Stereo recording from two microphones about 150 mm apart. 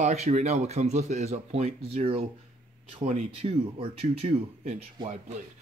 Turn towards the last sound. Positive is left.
turn(degrees=-40)  # may be behind; listen again after turning